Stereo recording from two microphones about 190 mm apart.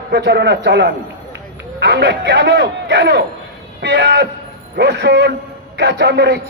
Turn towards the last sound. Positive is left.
turn(degrees=-60)  # may be behind; listen again after turning